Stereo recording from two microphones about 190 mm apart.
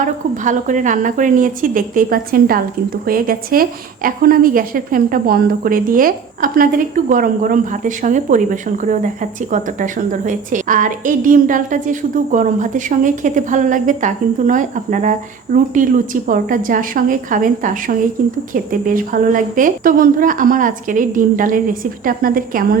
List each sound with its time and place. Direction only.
0.0 s a woman's voice: 40° right (ahead or behind)